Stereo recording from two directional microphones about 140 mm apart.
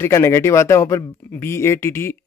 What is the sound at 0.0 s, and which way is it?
Speech, 20° left (ahead or behind).